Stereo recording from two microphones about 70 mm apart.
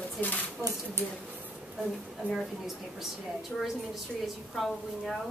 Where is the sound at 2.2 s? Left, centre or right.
Right.